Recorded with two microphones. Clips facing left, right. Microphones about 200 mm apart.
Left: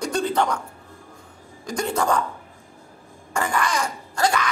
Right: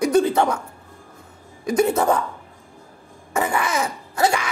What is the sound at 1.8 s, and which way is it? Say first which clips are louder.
Speech: right 5 dB; 20° right (ahead or behind).